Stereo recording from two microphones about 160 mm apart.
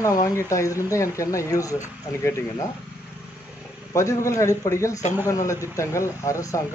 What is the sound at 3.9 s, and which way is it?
Speech, 20° left (ahead or behind).